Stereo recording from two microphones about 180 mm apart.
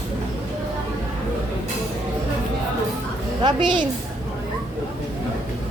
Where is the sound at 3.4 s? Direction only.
25° right (ahead or behind).